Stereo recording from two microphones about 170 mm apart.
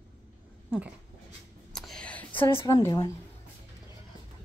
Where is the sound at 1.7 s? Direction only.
5° left (ahead or behind).